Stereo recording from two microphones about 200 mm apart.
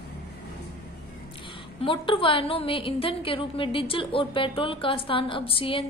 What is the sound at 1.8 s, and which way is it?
A woman's voice, 25° left (ahead or behind).